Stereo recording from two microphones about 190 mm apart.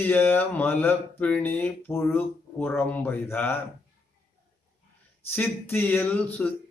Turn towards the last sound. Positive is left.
turn(degrees=10)  # may be behind; listen again after turning